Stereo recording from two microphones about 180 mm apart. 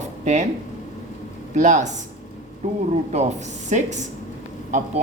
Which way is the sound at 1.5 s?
40° right (ahead or behind).